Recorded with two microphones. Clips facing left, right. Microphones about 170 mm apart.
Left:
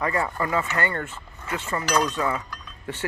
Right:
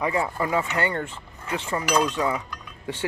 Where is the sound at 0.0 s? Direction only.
15° right (ahead or behind).